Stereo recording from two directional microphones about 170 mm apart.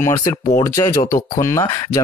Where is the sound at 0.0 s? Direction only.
15° left (ahead or behind).